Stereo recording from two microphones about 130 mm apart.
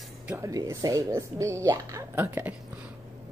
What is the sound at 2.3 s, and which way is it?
Speech, 15° right (ahead or behind).